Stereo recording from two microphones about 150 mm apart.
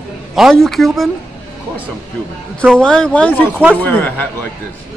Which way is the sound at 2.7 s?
5° left (ahead or behind).